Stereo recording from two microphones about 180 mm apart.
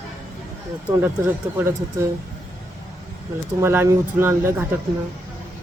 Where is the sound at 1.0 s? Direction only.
15° right (ahead or behind).